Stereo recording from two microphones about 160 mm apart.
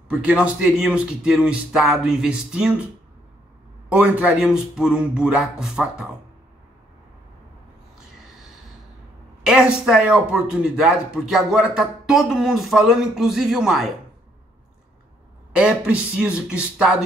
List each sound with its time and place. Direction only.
0.1 s a man's voice: 5° right (ahead or behind)
3.9 s a man's voice: 10° right (ahead or behind)
9.4 s a man's voice: 5° right (ahead or behind)
15.5 s speech: 5° right (ahead or behind)